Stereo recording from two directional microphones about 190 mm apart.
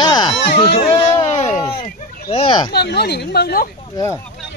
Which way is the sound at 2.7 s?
60° left (ahead or behind).